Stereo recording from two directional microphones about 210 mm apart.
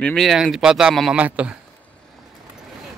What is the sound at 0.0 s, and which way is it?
Speech, centre (ahead or behind).